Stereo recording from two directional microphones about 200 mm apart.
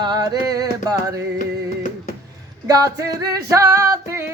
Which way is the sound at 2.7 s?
15° right (ahead or behind).